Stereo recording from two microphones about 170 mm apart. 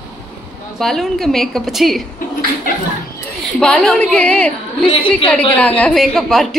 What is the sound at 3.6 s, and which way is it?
Speech, 5° left (ahead or behind).